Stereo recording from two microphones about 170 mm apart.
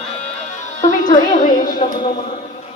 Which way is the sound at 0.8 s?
50° left (ahead or behind).